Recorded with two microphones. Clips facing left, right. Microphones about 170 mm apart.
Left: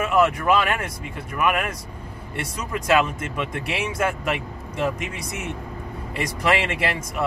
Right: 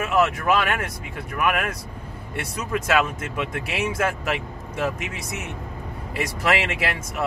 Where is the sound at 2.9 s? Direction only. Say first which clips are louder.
Left 4 dB; 5° right (ahead or behind).